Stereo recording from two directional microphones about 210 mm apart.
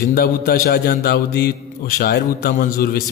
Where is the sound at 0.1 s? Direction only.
45° left (ahead or behind).